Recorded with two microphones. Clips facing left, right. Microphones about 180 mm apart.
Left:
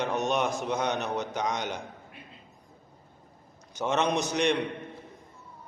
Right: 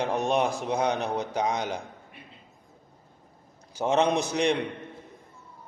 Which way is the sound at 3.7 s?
30° right (ahead or behind).